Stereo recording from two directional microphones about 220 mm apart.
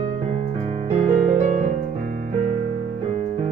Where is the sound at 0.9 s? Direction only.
30° right (ahead or behind).